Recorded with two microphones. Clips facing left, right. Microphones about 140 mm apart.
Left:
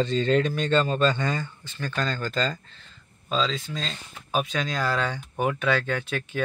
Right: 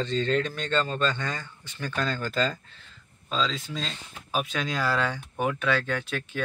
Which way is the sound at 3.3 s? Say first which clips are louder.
Left 2 dB; 5° left (ahead or behind).